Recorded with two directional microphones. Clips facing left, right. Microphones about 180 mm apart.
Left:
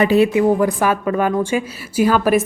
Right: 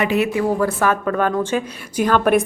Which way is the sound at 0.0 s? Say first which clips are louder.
Left 5 dB; 35° left (ahead or behind).